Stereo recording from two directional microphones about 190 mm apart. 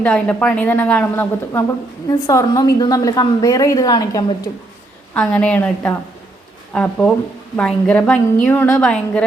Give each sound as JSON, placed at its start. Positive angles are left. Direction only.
{"t": 0.0, "sound": "a woman's voice", "side_deg": 5}
{"t": 5.1, "sound": "a woman's voice", "side_deg": 5}